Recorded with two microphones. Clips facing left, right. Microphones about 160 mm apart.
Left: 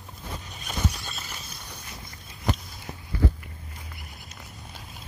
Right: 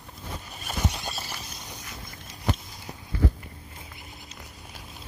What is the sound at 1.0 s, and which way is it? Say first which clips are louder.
Horse: right 4 dB; 35° right (ahead or behind).